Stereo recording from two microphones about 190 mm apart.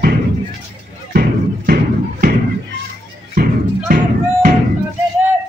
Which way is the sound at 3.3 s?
45° right (ahead or behind).